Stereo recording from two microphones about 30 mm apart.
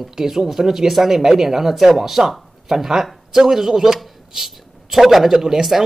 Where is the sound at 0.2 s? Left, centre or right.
Centre.